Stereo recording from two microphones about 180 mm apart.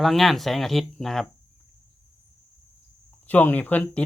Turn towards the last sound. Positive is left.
turn(degrees=10)  # may be behind; listen again after turning